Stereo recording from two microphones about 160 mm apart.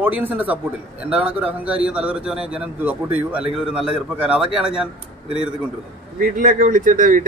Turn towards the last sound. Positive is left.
turn(degrees=-60)  # may be behind; listen again after turning